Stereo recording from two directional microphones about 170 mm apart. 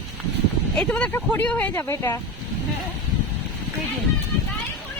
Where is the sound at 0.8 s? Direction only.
5° left (ahead or behind).